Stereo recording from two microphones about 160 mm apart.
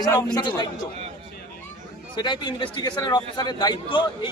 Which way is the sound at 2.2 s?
30° left (ahead or behind).